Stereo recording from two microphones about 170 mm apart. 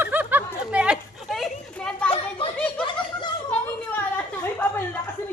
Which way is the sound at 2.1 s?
30° left (ahead or behind).